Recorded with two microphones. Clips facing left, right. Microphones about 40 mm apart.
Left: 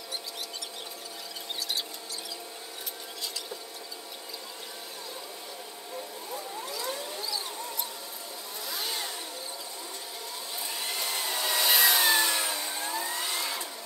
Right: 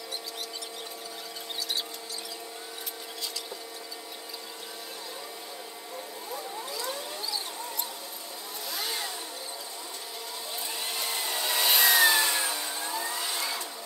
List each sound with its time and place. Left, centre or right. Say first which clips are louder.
6.8 s a sound: left 1 dB; centre
8.6 s vehicle: right 1 dB; centre
10.8 s hair dryer: even; centre
11.2 s vehicle: even; centre
12.2 s a sound: even; right
12.5 s vehicle: even; centre